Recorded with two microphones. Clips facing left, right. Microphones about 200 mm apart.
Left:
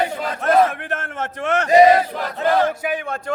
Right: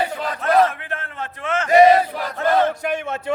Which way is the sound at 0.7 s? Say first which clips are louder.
Left 4 dB; 75° left (ahead or behind).